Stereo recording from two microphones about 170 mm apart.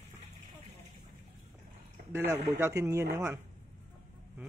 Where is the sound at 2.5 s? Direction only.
15° right (ahead or behind).